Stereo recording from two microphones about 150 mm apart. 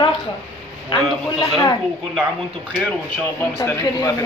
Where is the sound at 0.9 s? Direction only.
Centre (ahead or behind).